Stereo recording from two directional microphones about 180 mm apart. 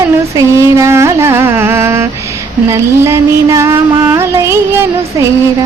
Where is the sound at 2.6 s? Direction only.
15° right (ahead or behind).